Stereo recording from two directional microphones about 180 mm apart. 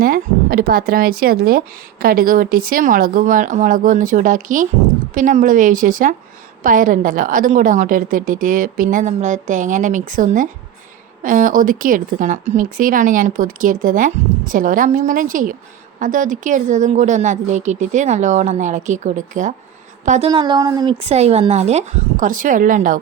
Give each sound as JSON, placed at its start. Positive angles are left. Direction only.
{"t": 0.0, "sound": "speech", "side_deg": -55}
{"t": 21.0, "sound": "a woman's voice", "side_deg": -35}